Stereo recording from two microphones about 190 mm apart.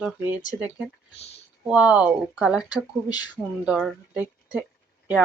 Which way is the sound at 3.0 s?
20° left (ahead or behind).